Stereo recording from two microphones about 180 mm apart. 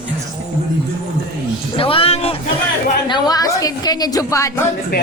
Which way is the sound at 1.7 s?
30° left (ahead or behind).